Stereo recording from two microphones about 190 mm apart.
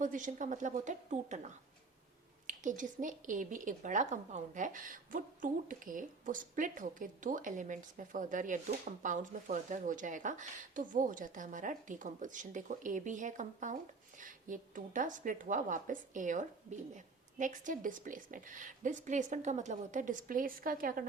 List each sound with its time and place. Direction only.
0.0 s a woman's voice: 40° right (ahead or behind)